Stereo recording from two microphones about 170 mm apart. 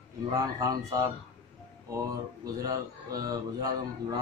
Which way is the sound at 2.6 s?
20° right (ahead or behind).